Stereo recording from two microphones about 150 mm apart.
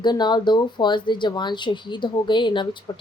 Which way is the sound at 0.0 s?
30° left (ahead or behind).